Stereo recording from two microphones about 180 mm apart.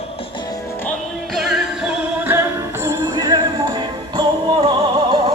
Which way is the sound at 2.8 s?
20° right (ahead or behind).